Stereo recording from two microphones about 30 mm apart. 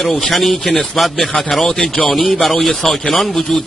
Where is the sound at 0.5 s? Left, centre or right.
Centre.